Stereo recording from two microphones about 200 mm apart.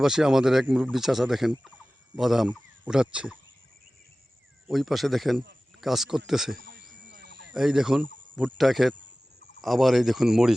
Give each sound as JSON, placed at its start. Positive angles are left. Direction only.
{"t": 0.0, "sound": "a man's voice", "side_deg": -5}
{"t": 4.7, "sound": "a man's voice", "side_deg": 0}
{"t": 7.2, "sound": "a sound", "side_deg": -60}
{"t": 7.5, "sound": "a man's voice", "side_deg": -5}